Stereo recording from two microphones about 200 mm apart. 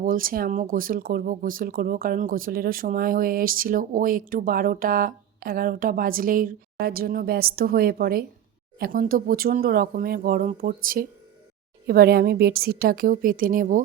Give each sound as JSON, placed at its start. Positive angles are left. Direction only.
{"t": 0.0, "sound": "speech", "side_deg": -45}
{"t": 11.9, "sound": "speech", "side_deg": -50}